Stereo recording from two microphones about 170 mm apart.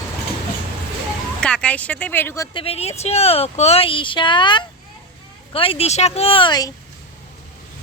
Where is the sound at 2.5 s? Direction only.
35° left (ahead or behind).